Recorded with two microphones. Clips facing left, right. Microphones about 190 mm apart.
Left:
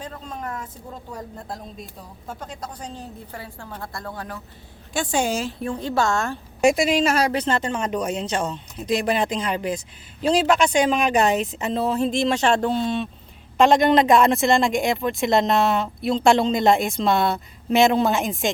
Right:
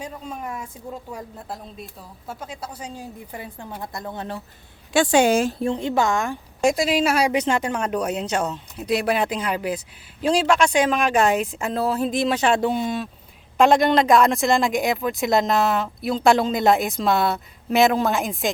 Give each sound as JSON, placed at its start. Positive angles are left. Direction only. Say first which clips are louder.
{"t": 0.0, "sound": "speech", "louder": "right 1 dB", "side_deg": -10}
{"t": 4.9, "sound": "a woman's voice", "louder": "right 6 dB", "side_deg": -75}
{"t": 5.5, "sound": "speech", "louder": "right 2 dB", "side_deg": -25}
{"t": 6.6, "sound": "speech", "louder": "left 1 dB", "side_deg": 0}